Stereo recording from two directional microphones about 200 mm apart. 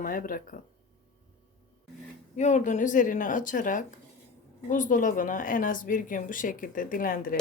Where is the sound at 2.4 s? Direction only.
35° left (ahead or behind).